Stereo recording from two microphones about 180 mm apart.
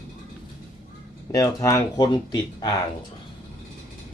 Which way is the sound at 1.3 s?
15° left (ahead or behind).